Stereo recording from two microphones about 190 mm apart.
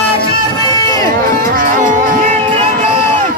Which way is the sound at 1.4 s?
45° right (ahead or behind).